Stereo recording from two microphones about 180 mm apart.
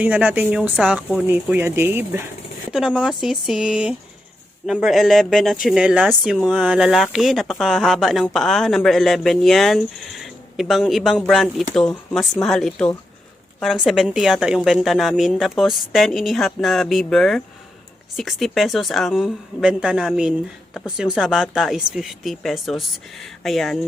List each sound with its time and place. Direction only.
0.0 s speech: 10° right (ahead or behind)